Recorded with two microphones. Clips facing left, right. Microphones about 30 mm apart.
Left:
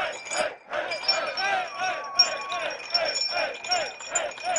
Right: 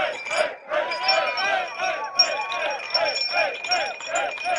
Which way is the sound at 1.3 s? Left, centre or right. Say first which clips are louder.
Right 3 dB; centre.